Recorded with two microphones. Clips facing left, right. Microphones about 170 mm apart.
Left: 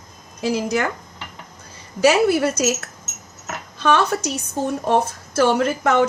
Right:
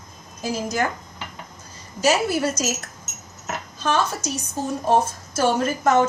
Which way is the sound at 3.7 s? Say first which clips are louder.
Left 5 dB; 65° left (ahead or behind).